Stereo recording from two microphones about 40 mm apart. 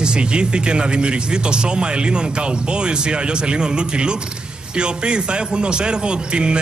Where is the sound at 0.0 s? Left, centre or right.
Right.